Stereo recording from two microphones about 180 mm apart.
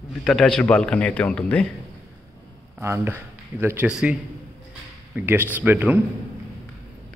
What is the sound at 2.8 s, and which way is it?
Speech, 15° right (ahead or behind).